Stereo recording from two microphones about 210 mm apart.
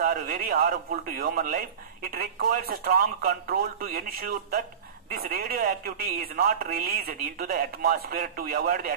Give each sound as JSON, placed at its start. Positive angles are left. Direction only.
{"t": 0.0, "sound": "speech", "side_deg": -45}